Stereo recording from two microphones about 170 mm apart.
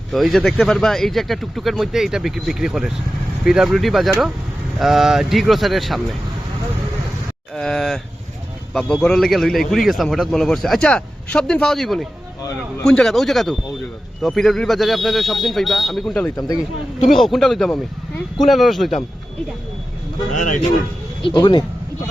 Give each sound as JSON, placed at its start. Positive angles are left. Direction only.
{"t": 0.1, "sound": "a man's voice", "side_deg": 0}
{"t": 7.5, "sound": "a man's voice", "side_deg": 0}
{"t": 21.2, "sound": "speech", "side_deg": 30}